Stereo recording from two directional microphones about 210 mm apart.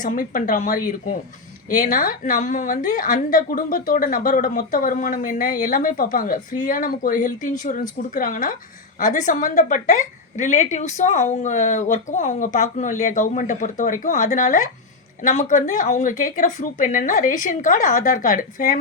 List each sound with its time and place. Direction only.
0.0 s a woman's voice: 40° left (ahead or behind)